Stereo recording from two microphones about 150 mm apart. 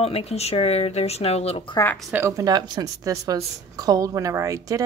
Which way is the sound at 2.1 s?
20° right (ahead or behind).